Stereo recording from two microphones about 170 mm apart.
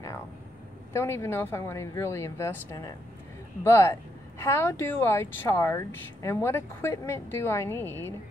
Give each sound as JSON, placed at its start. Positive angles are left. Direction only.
{"t": 0.9, "sound": "a woman's voice", "side_deg": 15}